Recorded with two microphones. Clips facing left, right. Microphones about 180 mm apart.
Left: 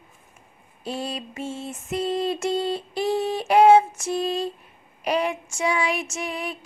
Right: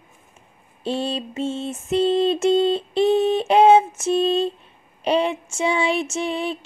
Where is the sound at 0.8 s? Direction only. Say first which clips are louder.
Right 6 dB; 25° right (ahead or behind).